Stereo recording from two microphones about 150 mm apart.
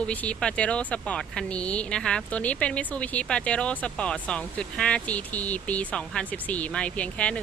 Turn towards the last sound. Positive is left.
turn(degrees=10)  # may be behind; listen again after turning